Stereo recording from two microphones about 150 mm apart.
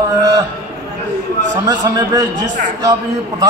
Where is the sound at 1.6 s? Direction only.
25° right (ahead or behind).